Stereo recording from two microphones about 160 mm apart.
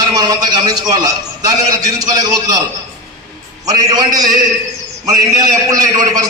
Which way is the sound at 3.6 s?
25° right (ahead or behind).